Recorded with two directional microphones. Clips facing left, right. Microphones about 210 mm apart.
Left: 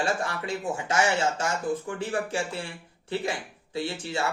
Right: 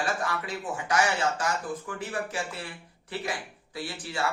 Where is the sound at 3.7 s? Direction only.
25° left (ahead or behind).